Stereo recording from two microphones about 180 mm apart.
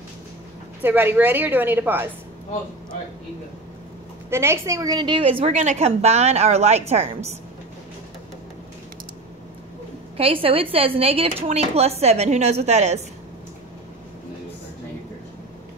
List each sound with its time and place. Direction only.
0.8 s a woman's voice: 10° right (ahead or behind)
4.3 s a woman's voice: 15° right (ahead or behind); by 6.8 s 35° right (ahead or behind)
10.1 s a woman's voice: 30° right (ahead or behind)